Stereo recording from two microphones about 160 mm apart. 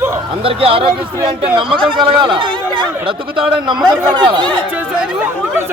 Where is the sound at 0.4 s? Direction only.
35° right (ahead or behind).